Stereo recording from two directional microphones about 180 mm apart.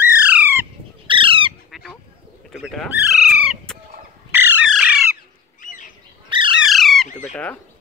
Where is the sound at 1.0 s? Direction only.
30° right (ahead or behind).